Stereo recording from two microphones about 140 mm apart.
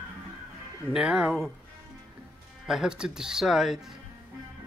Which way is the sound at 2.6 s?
5° right (ahead or behind).